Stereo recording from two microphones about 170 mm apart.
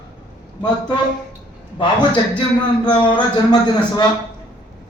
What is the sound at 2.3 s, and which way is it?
Speech, 5° left (ahead or behind).